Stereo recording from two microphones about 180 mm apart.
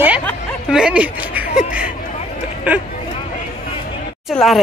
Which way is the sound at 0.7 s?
5° right (ahead or behind).